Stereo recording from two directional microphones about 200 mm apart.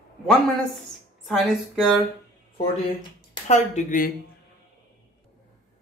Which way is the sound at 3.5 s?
40° left (ahead or behind).